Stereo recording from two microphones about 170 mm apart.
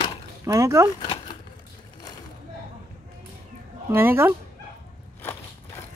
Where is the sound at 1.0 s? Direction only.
25° left (ahead or behind).